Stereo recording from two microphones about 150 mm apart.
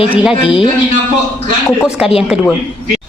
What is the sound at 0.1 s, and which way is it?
Speech, 10° right (ahead or behind).